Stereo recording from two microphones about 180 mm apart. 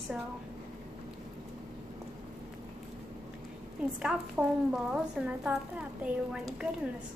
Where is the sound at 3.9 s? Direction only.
5° right (ahead or behind).